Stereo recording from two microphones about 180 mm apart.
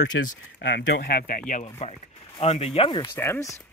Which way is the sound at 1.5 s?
35° left (ahead or behind).